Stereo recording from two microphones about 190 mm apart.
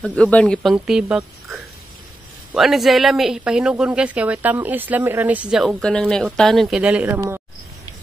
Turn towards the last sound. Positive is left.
turn(degrees=-10)  # may be behind; listen again after turning